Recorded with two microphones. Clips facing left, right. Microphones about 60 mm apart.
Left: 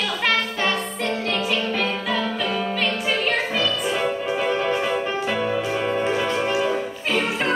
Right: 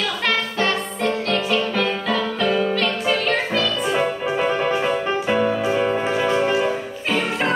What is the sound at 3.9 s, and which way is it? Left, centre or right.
Music, centre.